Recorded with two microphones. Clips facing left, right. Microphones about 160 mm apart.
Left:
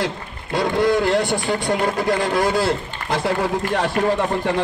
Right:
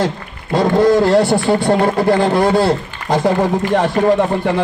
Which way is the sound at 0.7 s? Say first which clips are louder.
Right 6 dB; 45° right (ahead or behind).